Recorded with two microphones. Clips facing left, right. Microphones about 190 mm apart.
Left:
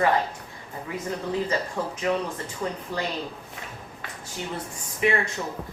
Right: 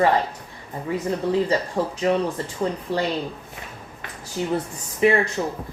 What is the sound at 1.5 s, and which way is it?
Speech, 35° right (ahead or behind).